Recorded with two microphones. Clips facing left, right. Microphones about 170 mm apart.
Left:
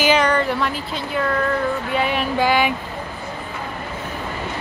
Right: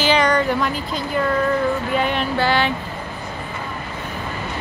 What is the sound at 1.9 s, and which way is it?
Speech, 5° left (ahead or behind).